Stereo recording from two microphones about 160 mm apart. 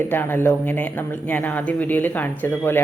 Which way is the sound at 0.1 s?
15° left (ahead or behind).